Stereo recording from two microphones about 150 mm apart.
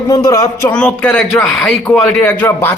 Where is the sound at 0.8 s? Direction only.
10° left (ahead or behind).